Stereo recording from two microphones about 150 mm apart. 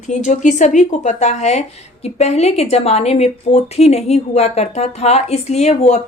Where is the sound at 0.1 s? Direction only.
55° left (ahead or behind).